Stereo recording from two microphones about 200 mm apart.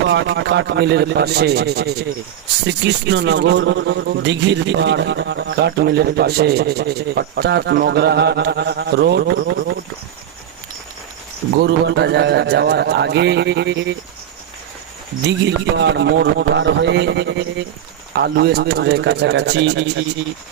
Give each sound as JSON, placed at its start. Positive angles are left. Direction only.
{"t": 0.1, "sound": "a man's voice", "side_deg": -60}
{"t": 11.6, "sound": "a man's voice", "side_deg": -55}
{"t": 15.3, "sound": "a man's voice", "side_deg": -60}